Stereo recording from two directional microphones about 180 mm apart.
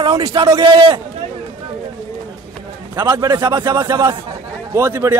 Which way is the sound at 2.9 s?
20° right (ahead or behind).